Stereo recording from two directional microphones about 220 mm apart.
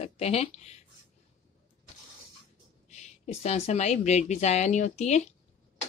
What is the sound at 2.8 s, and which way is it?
A woman's voice, 30° left (ahead or behind).